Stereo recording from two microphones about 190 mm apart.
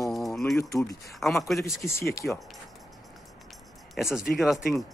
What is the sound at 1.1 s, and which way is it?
Speech, centre (ahead or behind).